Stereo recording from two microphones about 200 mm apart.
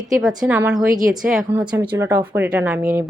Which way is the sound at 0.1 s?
Centre (ahead or behind).